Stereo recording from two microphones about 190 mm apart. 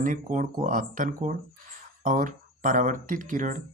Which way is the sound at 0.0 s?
45° right (ahead or behind).